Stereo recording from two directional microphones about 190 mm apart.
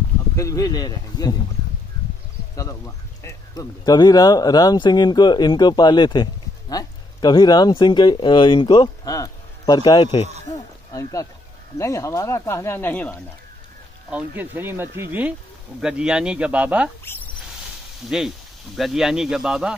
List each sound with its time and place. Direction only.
0.4 s speech: 15° left (ahead or behind)
2.5 s speech: 15° left (ahead or behind)
10.9 s speech: 15° left (ahead or behind)
14.1 s speech: 10° right (ahead or behind)
17.0 s a sound: 10° left (ahead or behind)
18.8 s speech: centre (ahead or behind)